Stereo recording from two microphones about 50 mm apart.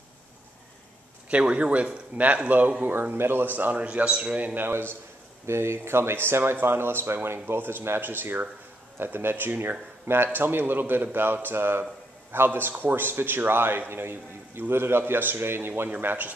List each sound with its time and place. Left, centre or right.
1.3 s a man's voice: right
2.8 s a man's voice: right
3.5 s a man's voice: right
4.6 s a man's voice: right
16.0 s speech: right